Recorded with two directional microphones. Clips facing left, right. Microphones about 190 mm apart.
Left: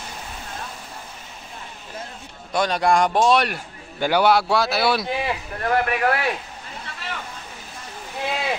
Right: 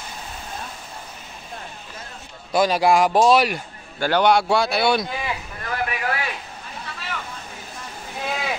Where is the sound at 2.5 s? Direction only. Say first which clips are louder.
Right 2 dB; 5° right (ahead or behind).